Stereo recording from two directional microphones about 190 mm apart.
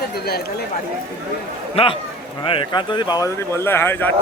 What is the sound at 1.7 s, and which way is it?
Speech, 30° left (ahead or behind).